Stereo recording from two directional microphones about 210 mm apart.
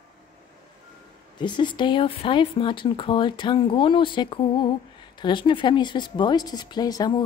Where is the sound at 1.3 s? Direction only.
20° left (ahead or behind).